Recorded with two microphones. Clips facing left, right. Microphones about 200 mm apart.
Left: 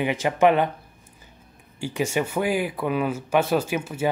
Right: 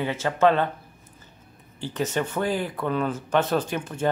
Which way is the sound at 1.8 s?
10° left (ahead or behind).